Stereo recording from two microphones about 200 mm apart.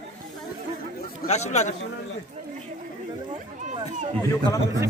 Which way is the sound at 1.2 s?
35° left (ahead or behind).